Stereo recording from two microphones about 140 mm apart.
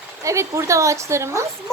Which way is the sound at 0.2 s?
20° right (ahead or behind).